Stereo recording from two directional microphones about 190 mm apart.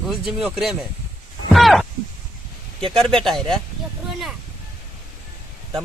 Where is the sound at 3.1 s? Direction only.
Centre (ahead or behind).